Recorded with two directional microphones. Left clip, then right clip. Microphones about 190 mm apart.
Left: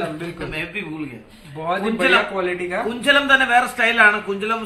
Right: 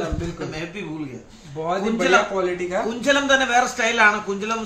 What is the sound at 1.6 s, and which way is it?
A man's voice, 5° right (ahead or behind).